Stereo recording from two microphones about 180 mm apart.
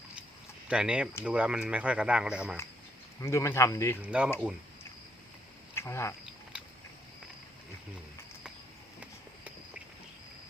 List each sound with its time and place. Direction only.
0.7 s speech: 5° right (ahead or behind)
3.2 s speech: 15° left (ahead or behind)
4.0 s speech: 5° right (ahead or behind)
5.7 s speech: 15° left (ahead or behind)
9.0 s clip-clop: 10° right (ahead or behind)